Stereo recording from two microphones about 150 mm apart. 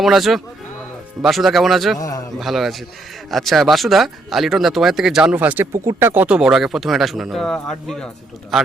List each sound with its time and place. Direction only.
0.0 s speech: centre (ahead or behind)
2.0 s a man's voice: 25° left (ahead or behind)
2.4 s speech: centre (ahead or behind)